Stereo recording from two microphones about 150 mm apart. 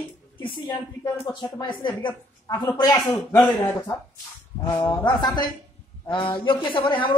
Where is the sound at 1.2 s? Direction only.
30° left (ahead or behind).